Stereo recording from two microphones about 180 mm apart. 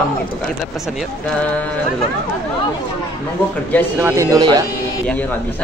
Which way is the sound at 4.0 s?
15° right (ahead or behind).